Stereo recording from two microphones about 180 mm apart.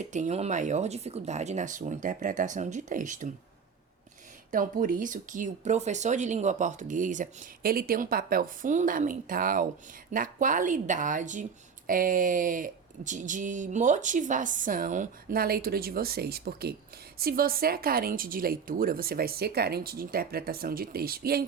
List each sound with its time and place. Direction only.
0.0 s speech: 40° right (ahead or behind)
4.5 s speech: 50° right (ahead or behind)